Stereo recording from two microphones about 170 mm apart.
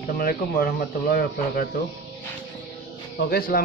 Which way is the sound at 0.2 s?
60° left (ahead or behind).